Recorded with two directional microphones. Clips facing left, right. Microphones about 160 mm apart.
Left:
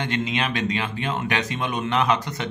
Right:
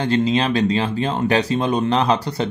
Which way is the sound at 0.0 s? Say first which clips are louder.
Right 7 dB; 35° right (ahead or behind).